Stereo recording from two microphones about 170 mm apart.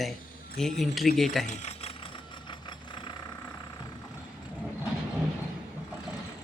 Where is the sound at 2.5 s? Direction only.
30° left (ahead or behind).